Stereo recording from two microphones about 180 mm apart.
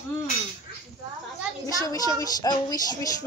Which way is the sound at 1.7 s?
20° left (ahead or behind).